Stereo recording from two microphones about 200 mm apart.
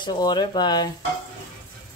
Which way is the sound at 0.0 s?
20° left (ahead or behind).